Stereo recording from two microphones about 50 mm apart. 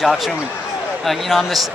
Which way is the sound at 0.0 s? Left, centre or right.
Centre.